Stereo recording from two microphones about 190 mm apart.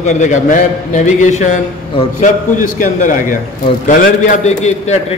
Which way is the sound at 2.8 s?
45° left (ahead or behind).